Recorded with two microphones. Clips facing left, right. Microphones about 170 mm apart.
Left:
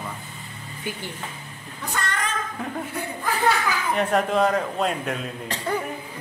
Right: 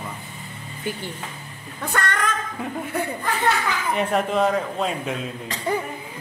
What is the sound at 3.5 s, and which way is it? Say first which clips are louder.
A child's voice: even; centre (ahead or behind).